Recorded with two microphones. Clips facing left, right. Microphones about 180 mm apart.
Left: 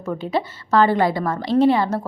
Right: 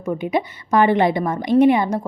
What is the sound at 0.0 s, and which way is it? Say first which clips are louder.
A woman's voice: right 2 dB; 15° right (ahead or behind).